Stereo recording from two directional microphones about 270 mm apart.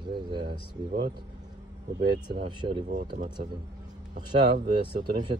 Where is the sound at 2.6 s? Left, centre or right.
Right.